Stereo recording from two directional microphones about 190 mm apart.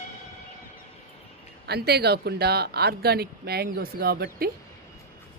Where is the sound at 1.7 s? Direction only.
60° right (ahead or behind).